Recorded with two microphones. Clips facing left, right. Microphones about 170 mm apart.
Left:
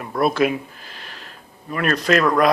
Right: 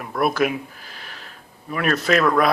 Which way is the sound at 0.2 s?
25° left (ahead or behind).